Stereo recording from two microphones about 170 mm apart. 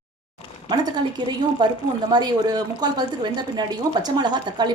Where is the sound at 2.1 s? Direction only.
25° right (ahead or behind).